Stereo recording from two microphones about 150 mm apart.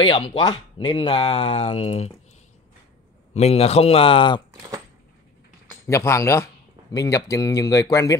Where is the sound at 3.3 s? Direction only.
45° left (ahead or behind).